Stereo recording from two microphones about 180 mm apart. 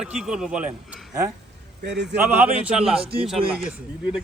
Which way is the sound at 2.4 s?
5° right (ahead or behind).